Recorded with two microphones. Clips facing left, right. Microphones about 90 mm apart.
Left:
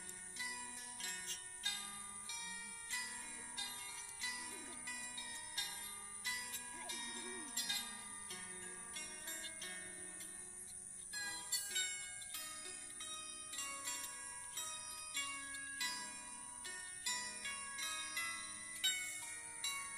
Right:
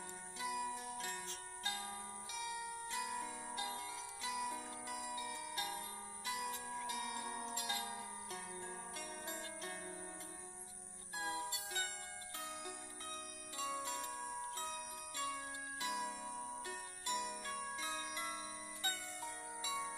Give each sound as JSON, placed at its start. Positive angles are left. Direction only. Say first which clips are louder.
{"t": 0.7, "sound": "music", "louder": "right 10 dB", "side_deg": -35}
{"t": 6.9, "sound": "music", "louder": "right 7 dB", "side_deg": -50}
{"t": 11.1, "sound": "music", "louder": "right 9 dB", "side_deg": -40}
{"t": 13.6, "sound": "music", "louder": "right 10 dB", "side_deg": -40}